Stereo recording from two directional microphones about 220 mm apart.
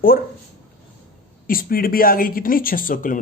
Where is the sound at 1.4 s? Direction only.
40° left (ahead or behind).